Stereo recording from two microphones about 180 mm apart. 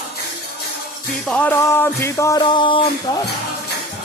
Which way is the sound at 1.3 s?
10° left (ahead or behind).